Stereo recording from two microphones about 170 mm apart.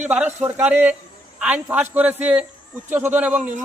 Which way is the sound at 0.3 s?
10° right (ahead or behind).